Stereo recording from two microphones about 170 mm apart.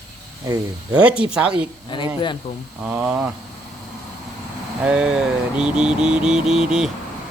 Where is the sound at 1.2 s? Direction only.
5° right (ahead or behind).